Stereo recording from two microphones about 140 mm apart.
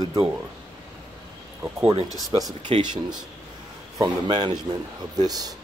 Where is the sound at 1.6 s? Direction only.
15° right (ahead or behind).